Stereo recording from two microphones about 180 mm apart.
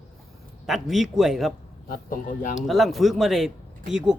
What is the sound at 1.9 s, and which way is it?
Speech, 50° left (ahead or behind).